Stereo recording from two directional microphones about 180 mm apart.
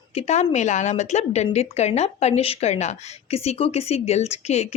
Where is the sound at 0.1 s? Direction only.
35° left (ahead or behind).